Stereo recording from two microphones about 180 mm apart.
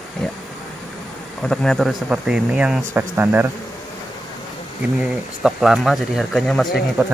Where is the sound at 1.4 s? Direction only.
5° left (ahead or behind).